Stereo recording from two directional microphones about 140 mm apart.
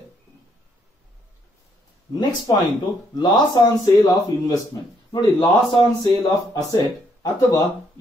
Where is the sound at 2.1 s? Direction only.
30° left (ahead or behind).